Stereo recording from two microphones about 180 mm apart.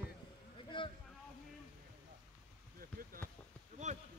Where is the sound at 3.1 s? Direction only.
50° right (ahead or behind).